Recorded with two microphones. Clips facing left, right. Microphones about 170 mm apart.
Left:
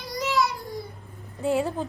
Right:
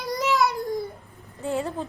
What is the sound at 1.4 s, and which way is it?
Speech, 15° left (ahead or behind).